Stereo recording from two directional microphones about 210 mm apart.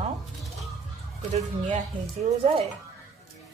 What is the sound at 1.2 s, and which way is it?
Speech, 30° right (ahead or behind).